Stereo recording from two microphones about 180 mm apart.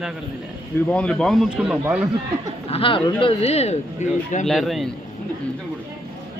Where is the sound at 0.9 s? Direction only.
5° left (ahead or behind).